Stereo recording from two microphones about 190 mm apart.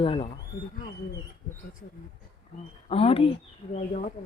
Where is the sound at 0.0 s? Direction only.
30° left (ahead or behind).